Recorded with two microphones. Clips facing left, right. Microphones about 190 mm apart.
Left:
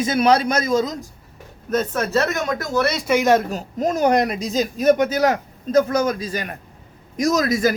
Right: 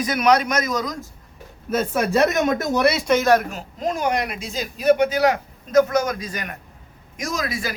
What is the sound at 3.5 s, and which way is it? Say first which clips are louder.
A man's voice: left 4 dB; 40° left (ahead or behind).